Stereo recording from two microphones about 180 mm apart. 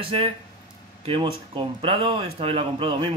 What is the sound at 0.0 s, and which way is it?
A man's voice, 30° right (ahead or behind).